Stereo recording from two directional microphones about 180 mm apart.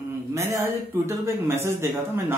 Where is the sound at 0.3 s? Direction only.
15° right (ahead or behind).